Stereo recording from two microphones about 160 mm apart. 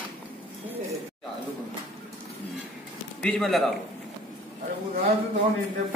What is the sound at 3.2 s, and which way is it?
Speech, centre (ahead or behind).